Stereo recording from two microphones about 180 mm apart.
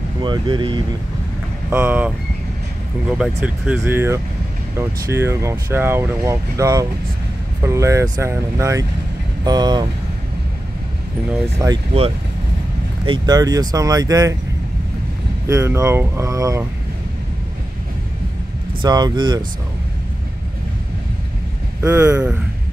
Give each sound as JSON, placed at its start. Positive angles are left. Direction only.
{"t": 0.2, "sound": "speech", "side_deg": -25}
{"t": 1.7, "sound": "speech", "side_deg": -10}
{"t": 11.5, "sound": "speech", "side_deg": -15}
{"t": 13.0, "sound": "speech", "side_deg": -25}
{"t": 15.4, "sound": "speech", "side_deg": -15}
{"t": 18.8, "sound": "speech", "side_deg": -25}
{"t": 21.8, "sound": "speech", "side_deg": -15}